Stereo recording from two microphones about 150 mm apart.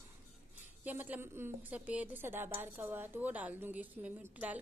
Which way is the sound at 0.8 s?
10° right (ahead or behind).